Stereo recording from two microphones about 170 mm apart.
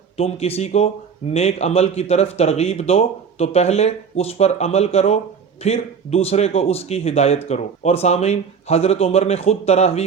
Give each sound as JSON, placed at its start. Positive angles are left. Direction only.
{"t": 0.2, "sound": "speech", "side_deg": 35}